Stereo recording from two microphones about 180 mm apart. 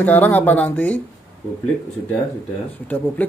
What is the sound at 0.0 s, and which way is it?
A man's voice, 10° left (ahead or behind).